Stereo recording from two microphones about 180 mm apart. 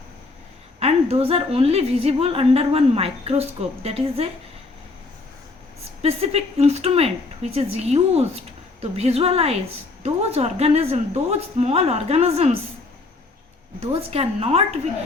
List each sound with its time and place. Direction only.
0.8 s a woman's voice: 35° right (ahead or behind)
6.0 s a woman's voice: 35° right (ahead or behind)
13.7 s a woman's voice: 35° right (ahead or behind)